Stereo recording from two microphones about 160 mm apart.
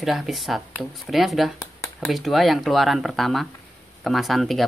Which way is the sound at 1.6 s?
15° left (ahead or behind).